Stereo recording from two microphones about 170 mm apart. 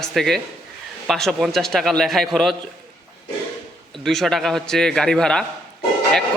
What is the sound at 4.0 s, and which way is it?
A man's voice, centre (ahead or behind).